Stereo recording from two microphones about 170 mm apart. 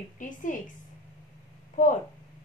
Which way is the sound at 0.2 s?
50° left (ahead or behind).